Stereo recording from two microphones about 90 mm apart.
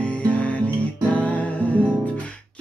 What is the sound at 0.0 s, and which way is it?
Music, 15° left (ahead or behind).